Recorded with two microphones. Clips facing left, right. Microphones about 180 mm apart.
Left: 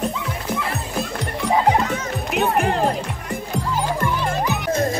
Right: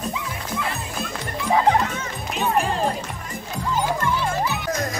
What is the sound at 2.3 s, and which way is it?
Music, 65° left (ahead or behind).